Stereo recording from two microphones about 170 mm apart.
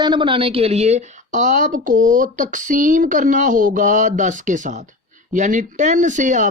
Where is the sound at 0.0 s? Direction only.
25° right (ahead or behind).